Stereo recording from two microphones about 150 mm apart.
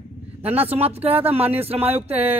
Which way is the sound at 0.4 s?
40° right (ahead or behind).